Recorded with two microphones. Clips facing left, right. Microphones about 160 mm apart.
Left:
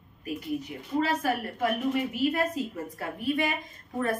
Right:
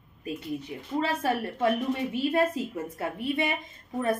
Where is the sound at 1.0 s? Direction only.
30° right (ahead or behind).